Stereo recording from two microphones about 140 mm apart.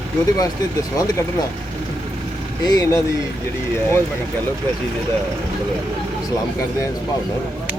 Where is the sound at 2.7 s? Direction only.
25° left (ahead or behind).